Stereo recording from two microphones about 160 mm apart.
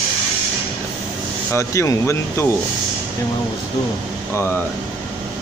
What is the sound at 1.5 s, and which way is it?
Speech, 20° left (ahead or behind).